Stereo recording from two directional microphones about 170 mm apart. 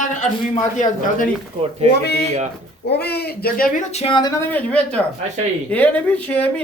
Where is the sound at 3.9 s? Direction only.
35° left (ahead or behind).